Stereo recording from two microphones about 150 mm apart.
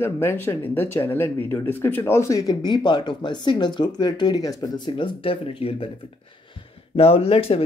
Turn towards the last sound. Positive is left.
turn(degrees=40)  # may be behind; listen again after turning